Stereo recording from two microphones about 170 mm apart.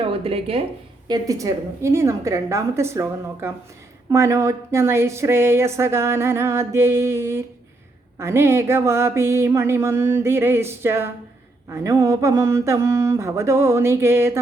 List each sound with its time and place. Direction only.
0.0 s speech: 35° right (ahead or behind)
1.0 s speech: 20° right (ahead or behind)